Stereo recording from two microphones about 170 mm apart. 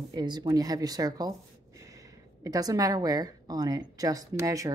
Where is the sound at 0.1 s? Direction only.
25° right (ahead or behind).